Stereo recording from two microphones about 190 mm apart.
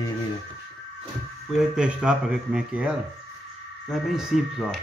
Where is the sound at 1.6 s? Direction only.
5° right (ahead or behind).